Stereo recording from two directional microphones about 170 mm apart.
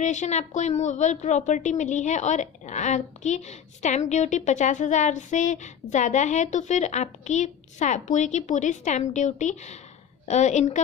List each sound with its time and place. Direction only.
0.0 s a woman's voice: 45° left (ahead or behind)